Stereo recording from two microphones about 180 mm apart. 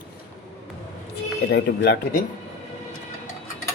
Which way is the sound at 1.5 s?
65° left (ahead or behind).